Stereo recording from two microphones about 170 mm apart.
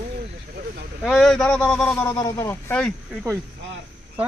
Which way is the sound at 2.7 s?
5° left (ahead or behind).